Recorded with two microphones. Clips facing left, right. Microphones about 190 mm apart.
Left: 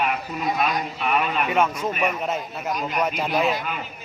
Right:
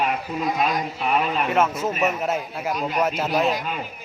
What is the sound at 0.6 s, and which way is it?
Speech, 30° right (ahead or behind).